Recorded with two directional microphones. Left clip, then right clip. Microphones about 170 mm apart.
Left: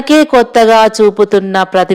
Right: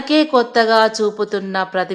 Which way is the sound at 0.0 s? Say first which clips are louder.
Left 7 dB; 40° left (ahead or behind).